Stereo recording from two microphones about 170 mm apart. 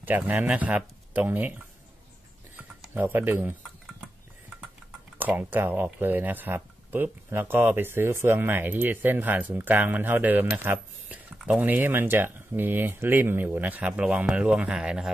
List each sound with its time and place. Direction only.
0.0 s speech: 10° right (ahead or behind)
2.5 s a sound: 10° right (ahead or behind)
5.1 s speech: 10° right (ahead or behind)